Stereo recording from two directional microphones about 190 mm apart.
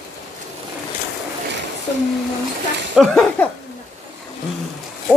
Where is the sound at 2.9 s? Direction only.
Centre (ahead or behind).